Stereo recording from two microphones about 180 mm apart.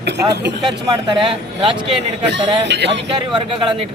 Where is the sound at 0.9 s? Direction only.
25° right (ahead or behind).